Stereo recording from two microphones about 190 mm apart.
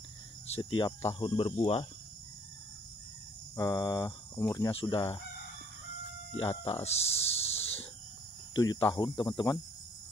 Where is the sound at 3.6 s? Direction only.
20° left (ahead or behind).